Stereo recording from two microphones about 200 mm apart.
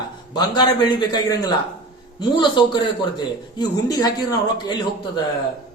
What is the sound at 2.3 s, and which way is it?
A man's voice, 20° left (ahead or behind).